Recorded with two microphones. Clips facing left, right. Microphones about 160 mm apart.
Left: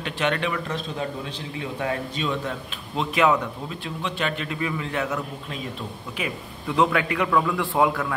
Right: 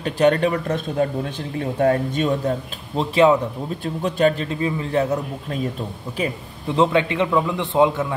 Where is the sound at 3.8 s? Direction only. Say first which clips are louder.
Right 10 dB; 45° right (ahead or behind); by 8.1 s 25° right (ahead or behind).